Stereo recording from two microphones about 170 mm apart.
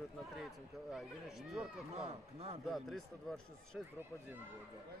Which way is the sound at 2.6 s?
Centre (ahead or behind).